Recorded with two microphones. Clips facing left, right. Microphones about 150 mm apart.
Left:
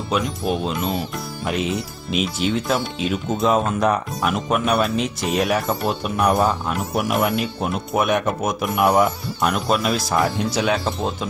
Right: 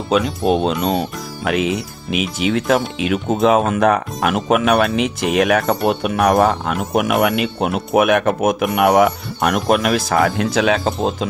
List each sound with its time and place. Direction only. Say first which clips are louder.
0.6 s speech: right 6 dB; 85° right
1.5 s speech: right 5 dB; 75° right (ahead or behind)